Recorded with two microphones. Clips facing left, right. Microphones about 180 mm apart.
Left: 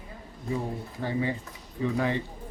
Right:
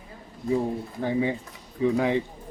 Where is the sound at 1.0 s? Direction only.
15° right (ahead or behind).